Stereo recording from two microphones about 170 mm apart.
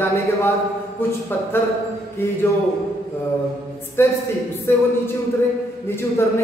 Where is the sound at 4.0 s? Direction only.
15° left (ahead or behind).